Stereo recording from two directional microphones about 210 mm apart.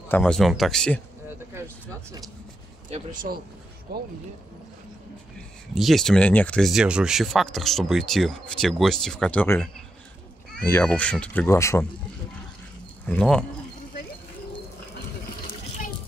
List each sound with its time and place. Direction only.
0.1 s speech: 5° left (ahead or behind)
2.9 s speech: 40° right (ahead or behind)
5.8 s speech: centre (ahead or behind)
13.0 s speech: 5° left (ahead or behind)